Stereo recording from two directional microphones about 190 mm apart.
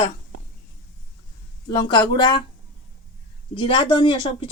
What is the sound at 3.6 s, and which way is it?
Speech, 25° left (ahead or behind).